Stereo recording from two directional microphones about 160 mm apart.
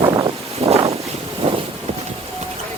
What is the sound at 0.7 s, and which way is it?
Boat, 40° right (ahead or behind).